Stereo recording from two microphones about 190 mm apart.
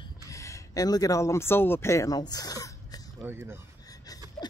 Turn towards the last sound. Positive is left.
turn(degrees=20)  # may be behind; listen again after turning